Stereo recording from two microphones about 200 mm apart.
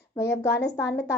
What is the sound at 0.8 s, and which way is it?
Speech, 15° left (ahead or behind).